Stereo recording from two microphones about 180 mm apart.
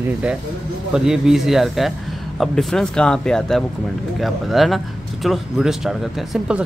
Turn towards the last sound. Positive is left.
turn(degrees=-5)  # may be behind; listen again after turning